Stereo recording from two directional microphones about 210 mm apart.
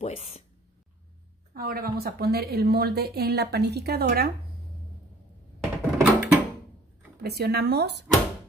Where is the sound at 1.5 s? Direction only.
45° right (ahead or behind).